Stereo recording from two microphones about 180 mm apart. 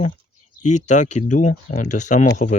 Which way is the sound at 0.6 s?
40° left (ahead or behind).